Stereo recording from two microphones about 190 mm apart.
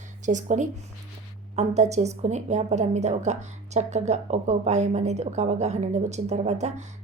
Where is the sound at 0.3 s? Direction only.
40° right (ahead or behind).